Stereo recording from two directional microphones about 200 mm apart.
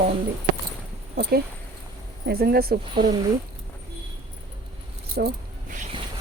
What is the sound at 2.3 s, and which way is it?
Speech, 50° right (ahead or behind).